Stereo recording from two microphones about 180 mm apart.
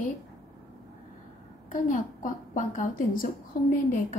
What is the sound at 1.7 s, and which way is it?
A woman's voice, 50° left (ahead or behind).